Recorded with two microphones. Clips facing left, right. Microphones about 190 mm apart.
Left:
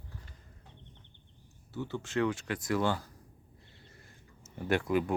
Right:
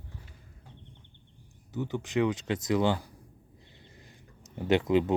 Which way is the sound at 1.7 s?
15° right (ahead or behind).